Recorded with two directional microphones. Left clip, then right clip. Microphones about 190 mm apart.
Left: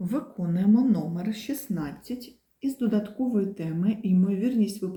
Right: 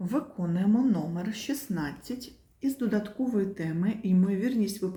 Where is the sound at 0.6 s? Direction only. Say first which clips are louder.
Left 3 dB; 5° right (ahead or behind).